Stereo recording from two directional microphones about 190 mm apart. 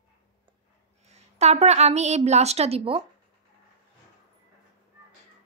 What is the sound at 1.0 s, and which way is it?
A woman's voice, 35° right (ahead or behind).